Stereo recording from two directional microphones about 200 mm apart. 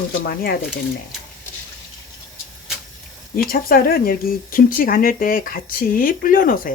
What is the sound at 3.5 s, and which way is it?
Speech, 45° left (ahead or behind).